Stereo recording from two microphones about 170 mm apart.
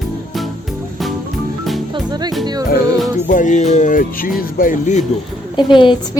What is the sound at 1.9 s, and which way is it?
Music, 25° right (ahead or behind).